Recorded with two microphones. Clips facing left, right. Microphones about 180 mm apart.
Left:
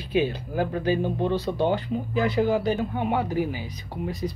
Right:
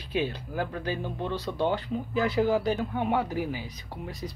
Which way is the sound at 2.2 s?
5° right (ahead or behind).